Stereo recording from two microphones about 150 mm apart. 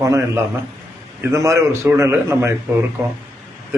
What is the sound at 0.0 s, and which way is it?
A man's voice, 20° right (ahead or behind).